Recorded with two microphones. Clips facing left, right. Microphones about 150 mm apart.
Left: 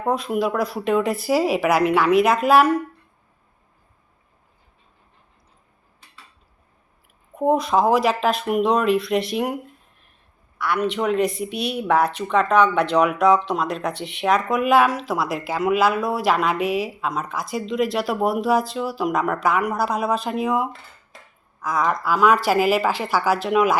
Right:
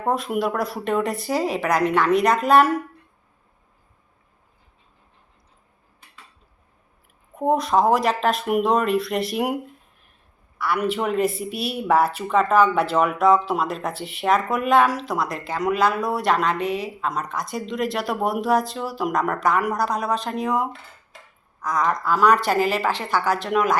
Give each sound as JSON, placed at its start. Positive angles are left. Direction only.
{"t": 0.0, "sound": "speech", "side_deg": 0}
{"t": 7.3, "sound": "speech", "side_deg": 0}
{"t": 10.6, "sound": "a woman's voice", "side_deg": -5}